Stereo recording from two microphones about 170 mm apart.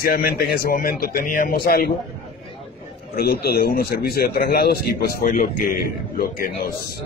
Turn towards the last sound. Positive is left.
turn(degrees=60)  # may be behind; listen again after turning